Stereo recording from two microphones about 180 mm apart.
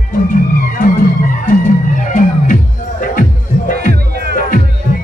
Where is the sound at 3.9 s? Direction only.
60° right (ahead or behind).